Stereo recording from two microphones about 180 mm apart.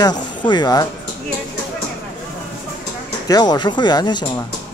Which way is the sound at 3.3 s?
20° left (ahead or behind).